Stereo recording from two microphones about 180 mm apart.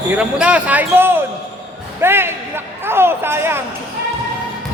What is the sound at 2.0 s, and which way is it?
Music, 15° right (ahead or behind).